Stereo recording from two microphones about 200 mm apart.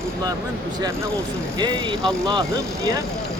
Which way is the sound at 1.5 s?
20° right (ahead or behind).